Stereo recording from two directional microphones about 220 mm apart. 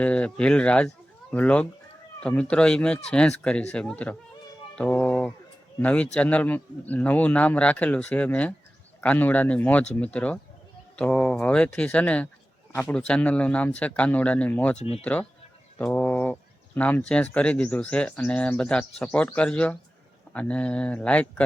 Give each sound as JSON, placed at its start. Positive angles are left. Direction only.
{"t": 0.0, "sound": "speech", "side_deg": 5}
{"t": 14.8, "sound": "speech", "side_deg": 30}
{"t": 15.0, "sound": "speech", "side_deg": 5}